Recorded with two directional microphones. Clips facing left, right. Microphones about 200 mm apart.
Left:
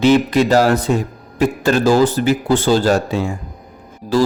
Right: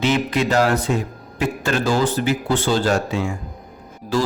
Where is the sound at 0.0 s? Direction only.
35° left (ahead or behind).